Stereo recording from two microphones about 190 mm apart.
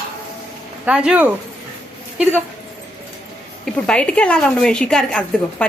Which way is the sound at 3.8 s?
5° left (ahead or behind).